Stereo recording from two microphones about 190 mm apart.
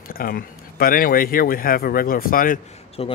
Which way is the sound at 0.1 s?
50° left (ahead or behind).